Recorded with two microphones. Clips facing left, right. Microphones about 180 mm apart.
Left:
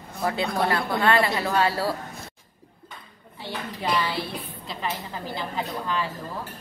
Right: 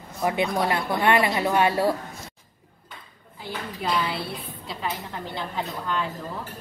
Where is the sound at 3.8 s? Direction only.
5° right (ahead or behind).